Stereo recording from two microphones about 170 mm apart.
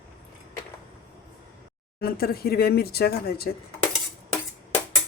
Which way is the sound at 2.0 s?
65° left (ahead or behind).